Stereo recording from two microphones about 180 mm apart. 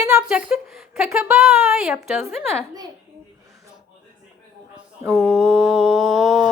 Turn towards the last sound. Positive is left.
turn(degrees=0)  # may be behind; listen again after turning